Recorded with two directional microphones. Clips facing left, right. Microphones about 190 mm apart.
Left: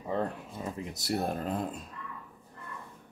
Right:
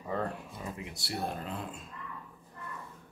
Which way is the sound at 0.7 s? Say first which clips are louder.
Left 7 dB; 40° left (ahead or behind).